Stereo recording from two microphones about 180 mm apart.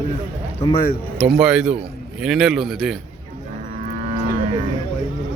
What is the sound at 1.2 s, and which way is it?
A man's voice, 5° right (ahead or behind).